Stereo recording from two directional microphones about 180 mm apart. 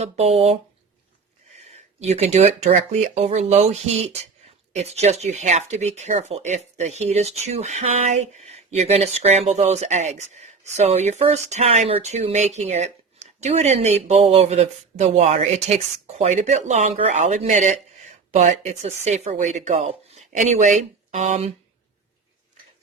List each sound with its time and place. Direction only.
0.0 s speech: 35° right (ahead or behind)